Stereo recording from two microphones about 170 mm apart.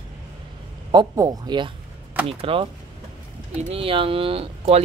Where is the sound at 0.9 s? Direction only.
25° right (ahead or behind).